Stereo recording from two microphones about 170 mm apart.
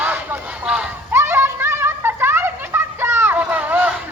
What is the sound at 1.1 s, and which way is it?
Children playing, 15° right (ahead or behind).